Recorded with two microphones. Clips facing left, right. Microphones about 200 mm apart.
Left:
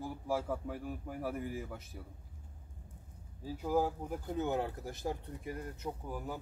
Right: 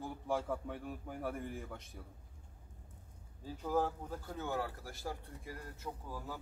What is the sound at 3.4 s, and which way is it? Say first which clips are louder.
Speech: left 3 dB; 10° left (ahead or behind).